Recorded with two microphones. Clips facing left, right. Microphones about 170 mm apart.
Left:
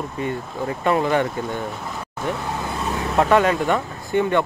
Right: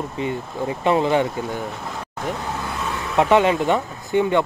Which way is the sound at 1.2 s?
Centre (ahead or behind).